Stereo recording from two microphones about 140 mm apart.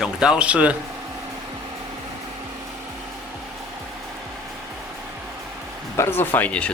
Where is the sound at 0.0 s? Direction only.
5° right (ahead or behind).